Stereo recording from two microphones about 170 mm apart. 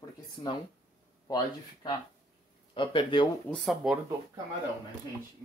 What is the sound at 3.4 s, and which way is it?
Speech, centre (ahead or behind).